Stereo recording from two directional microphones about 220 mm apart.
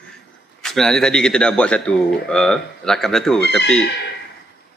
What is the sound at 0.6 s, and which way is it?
A man's voice, centre (ahead or behind).